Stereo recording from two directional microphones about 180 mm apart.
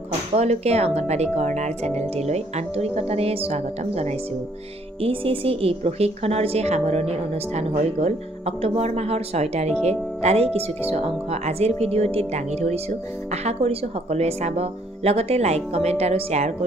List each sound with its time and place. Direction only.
0.4 s a woman's voice: 35° right (ahead or behind)